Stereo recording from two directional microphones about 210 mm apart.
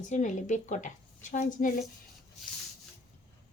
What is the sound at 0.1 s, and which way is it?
A woman's voice, 35° left (ahead or behind).